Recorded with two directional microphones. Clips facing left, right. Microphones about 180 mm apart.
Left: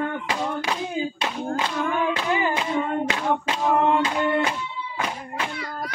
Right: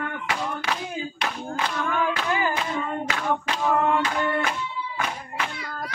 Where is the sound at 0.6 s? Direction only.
20° left (ahead or behind).